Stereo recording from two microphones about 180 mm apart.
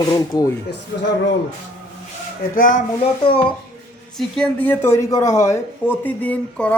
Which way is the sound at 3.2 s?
30° left (ahead or behind).